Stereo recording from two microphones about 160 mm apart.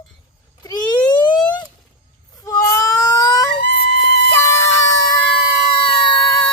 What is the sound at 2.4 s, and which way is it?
Baby cry, 20° left (ahead or behind).